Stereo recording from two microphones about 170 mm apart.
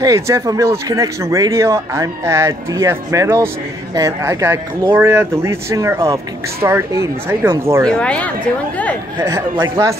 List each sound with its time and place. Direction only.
0.0 s speech: 20° right (ahead or behind)
7.9 s speech: 5° left (ahead or behind)
9.2 s speech: 20° right (ahead or behind)